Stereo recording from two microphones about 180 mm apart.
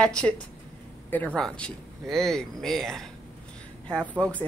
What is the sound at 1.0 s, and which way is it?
Speech, 10° left (ahead or behind).